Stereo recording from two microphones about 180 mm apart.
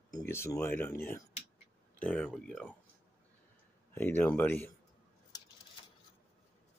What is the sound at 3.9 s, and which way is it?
Speech, 10° left (ahead or behind).